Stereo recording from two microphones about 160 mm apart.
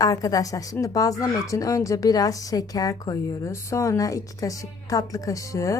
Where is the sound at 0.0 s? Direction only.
20° left (ahead or behind).